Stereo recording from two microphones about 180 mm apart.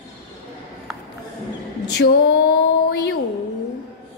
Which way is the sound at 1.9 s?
60° left (ahead or behind).